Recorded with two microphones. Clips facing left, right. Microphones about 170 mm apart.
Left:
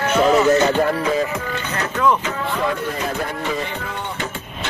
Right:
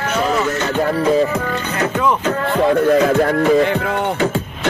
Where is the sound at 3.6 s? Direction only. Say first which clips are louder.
Right 11 dB; 70° right (ahead or behind).